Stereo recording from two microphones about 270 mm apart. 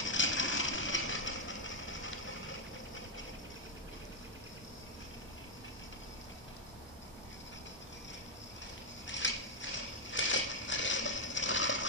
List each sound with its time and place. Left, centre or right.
0.0 s vehicle: left
9.0 s a sound: left
10.1 s coin: left